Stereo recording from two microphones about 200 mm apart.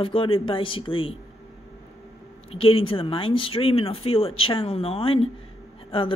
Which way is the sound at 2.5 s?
30° left (ahead or behind).